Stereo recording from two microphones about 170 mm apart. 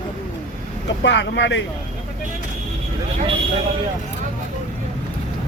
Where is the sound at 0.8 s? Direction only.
90° left.